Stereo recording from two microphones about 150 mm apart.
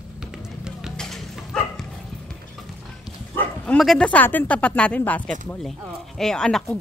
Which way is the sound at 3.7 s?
5° left (ahead or behind).